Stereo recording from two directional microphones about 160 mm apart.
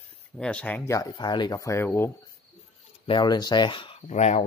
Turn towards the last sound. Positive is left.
turn(degrees=45)  # may be behind; listen again after turning